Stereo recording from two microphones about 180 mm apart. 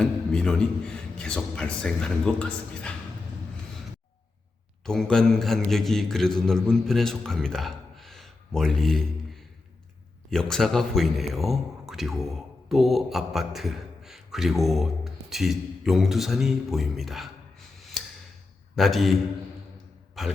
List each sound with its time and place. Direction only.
0.0 s a man's voice: 5° left (ahead or behind)
4.9 s a man's voice: 5° left (ahead or behind)
18.8 s a man's voice: centre (ahead or behind)